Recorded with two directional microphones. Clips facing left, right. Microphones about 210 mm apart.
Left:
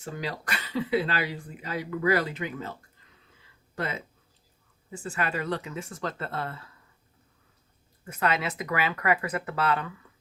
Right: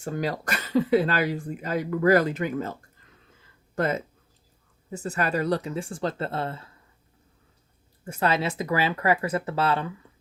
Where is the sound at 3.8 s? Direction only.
45° right (ahead or behind); by 6.7 s 25° right (ahead or behind).